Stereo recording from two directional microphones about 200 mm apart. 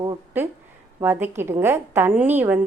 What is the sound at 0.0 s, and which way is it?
A woman's voice, 20° right (ahead or behind).